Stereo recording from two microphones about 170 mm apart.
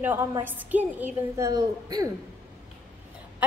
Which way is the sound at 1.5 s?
20° right (ahead or behind).